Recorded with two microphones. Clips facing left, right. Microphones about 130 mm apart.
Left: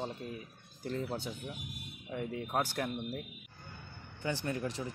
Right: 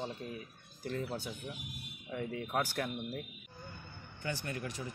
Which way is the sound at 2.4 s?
25° left (ahead or behind).